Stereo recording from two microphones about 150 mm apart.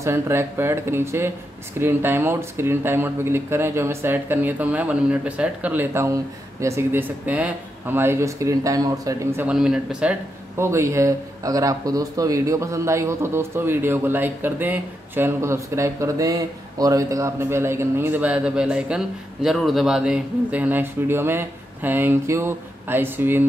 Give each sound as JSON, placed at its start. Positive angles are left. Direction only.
{"t": 0.0, "sound": "a man's voice", "side_deg": -15}
{"t": 9.5, "sound": "speech", "side_deg": -5}
{"t": 10.6, "sound": "a man's voice", "side_deg": -20}